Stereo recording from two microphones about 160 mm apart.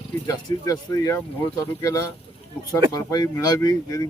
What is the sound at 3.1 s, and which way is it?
Speech, 25° left (ahead or behind).